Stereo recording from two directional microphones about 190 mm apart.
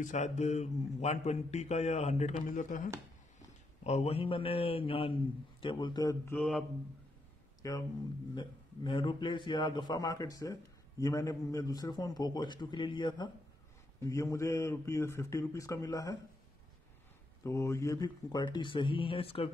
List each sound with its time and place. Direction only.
0.0 s a man's voice: 40° left (ahead or behind)
3.8 s a man's voice: 35° left (ahead or behind)
6.3 s mantra: centre (ahead or behind)
7.6 s a man's voice: 15° left (ahead or behind)
17.4 s a man's voice: 15° left (ahead or behind)